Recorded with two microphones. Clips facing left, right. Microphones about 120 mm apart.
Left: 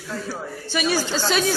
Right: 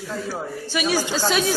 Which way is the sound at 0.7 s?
5° right (ahead or behind).